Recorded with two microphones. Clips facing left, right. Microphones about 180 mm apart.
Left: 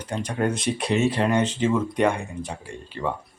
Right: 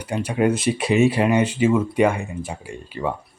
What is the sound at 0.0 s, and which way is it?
Speech, 10° right (ahead or behind).